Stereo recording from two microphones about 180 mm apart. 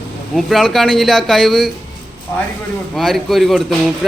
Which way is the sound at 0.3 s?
Centre (ahead or behind).